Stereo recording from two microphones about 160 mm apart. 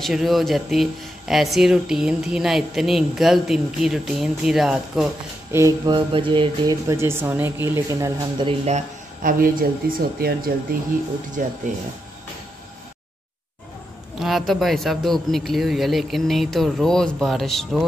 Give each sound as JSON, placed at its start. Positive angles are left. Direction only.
{"t": 0.0, "sound": "speech", "side_deg": 0}
{"t": 5.5, "sound": "speech", "side_deg": -20}
{"t": 8.5, "sound": "speech", "side_deg": -45}
{"t": 9.2, "sound": "speech", "side_deg": -60}
{"t": 14.2, "sound": "speech", "side_deg": 0}